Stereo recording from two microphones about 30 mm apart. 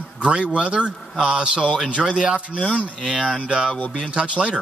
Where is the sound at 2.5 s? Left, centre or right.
Left.